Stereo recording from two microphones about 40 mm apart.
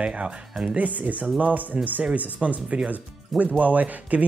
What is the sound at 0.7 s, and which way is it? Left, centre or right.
Speech, right.